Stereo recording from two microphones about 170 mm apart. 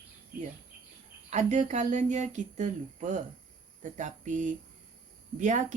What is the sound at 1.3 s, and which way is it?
Speech, 45° right (ahead or behind).